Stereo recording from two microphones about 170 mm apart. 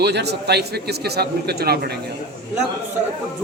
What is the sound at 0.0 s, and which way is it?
A man's voice, 80° right.